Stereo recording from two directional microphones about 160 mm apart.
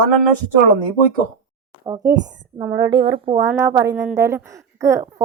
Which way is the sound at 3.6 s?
15° right (ahead or behind).